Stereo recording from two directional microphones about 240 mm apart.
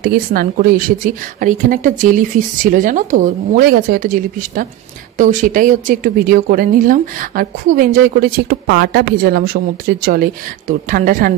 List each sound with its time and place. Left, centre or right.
0.0 s speech: right